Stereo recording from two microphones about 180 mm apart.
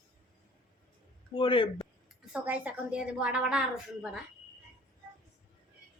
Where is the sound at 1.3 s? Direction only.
30° left (ahead or behind).